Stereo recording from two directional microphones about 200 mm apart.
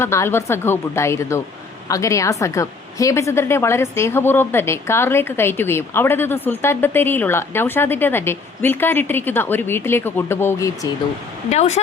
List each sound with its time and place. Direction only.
0.0 s a woman's voice: 15° left (ahead or behind)
11.4 s speech: 35° left (ahead or behind)